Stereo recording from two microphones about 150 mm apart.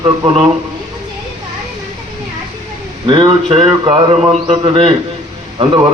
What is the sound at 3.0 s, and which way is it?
A man's voice, 35° right (ahead or behind).